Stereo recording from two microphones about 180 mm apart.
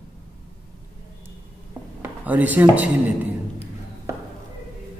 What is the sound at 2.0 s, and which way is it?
Speech, 10° right (ahead or behind).